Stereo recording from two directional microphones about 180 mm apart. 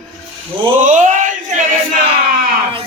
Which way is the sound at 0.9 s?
45° right (ahead or behind).